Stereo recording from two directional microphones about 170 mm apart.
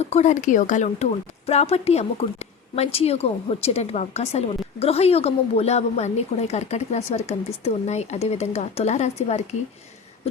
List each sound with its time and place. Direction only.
0.0 s a woman's voice: 40° left (ahead or behind)